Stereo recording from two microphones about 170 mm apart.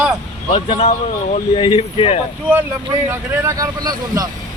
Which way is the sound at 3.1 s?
15° right (ahead or behind).